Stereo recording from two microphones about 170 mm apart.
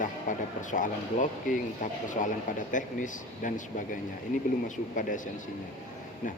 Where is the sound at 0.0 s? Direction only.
50° left (ahead or behind).